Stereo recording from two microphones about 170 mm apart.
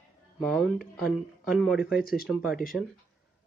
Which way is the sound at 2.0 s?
60° left (ahead or behind).